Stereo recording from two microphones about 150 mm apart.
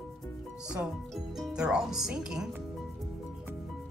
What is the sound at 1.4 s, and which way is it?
Speech, 5° right (ahead or behind).